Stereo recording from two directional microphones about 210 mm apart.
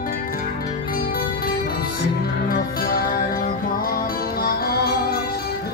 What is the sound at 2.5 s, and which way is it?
Music, 45° left (ahead or behind).